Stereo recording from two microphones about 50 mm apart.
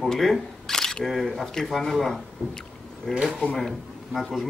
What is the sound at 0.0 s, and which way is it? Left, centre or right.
A man's voice, centre.